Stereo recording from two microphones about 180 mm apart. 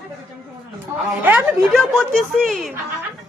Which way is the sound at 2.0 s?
Centre (ahead or behind).